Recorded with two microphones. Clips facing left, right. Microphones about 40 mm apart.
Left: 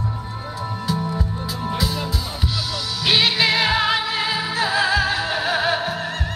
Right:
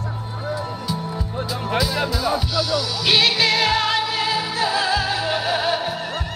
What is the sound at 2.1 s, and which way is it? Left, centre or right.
Music, centre.